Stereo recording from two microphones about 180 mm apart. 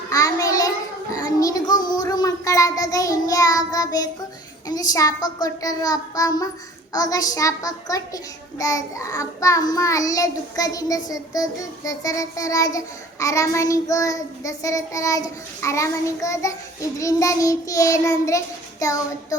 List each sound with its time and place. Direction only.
0.1 s a sound: 20° left (ahead or behind)
1.1 s child singing: 20° left (ahead or behind)
4.7 s a child's voice: 20° left (ahead or behind)
11.9 s child singing: 20° left (ahead or behind)